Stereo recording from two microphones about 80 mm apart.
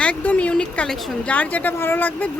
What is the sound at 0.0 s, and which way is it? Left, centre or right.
A woman's voice, centre.